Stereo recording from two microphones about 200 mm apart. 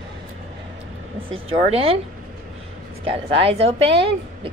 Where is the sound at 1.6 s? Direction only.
30° right (ahead or behind).